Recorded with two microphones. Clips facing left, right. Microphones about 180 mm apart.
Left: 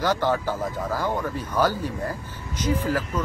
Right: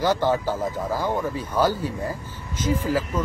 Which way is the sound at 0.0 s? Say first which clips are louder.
Right 2 dB; 10° right (ahead or behind).